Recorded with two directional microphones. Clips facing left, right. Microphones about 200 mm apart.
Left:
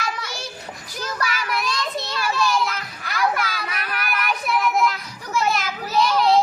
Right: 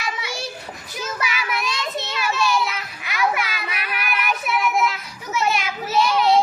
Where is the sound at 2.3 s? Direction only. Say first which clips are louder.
Even; 5° right (ahead or behind).